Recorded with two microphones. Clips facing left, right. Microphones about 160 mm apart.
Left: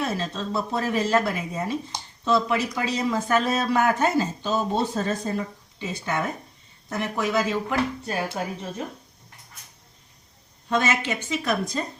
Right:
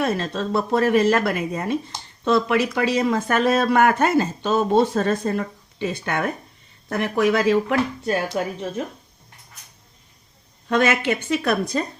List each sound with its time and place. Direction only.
0.0 s speech: 60° right (ahead or behind)
10.7 s speech: 60° right (ahead or behind)